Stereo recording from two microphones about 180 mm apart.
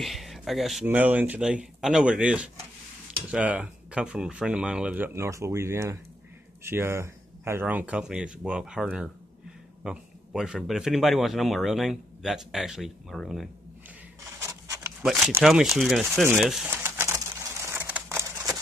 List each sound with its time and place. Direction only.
0.0 s speech: centre (ahead or behind)
14.4 s a sound: 15° right (ahead or behind)
15.0 s speech: 5° right (ahead or behind)
16.3 s bird: centre (ahead or behind)